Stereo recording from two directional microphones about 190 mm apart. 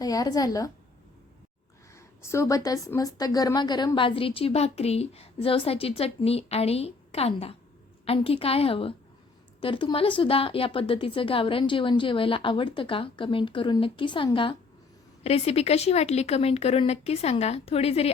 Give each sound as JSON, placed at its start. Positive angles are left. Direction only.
{"t": 0.0, "sound": "a woman's voice", "side_deg": 20}
{"t": 2.0, "sound": "a woman's voice", "side_deg": 15}